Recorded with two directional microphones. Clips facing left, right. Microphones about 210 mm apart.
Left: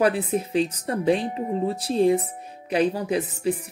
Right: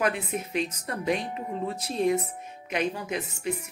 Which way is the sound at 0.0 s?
35° left (ahead or behind).